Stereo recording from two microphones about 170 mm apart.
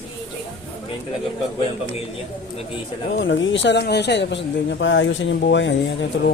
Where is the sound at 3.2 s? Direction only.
90° left.